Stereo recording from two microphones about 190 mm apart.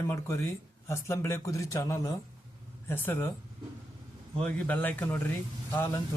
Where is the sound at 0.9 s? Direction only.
15° left (ahead or behind).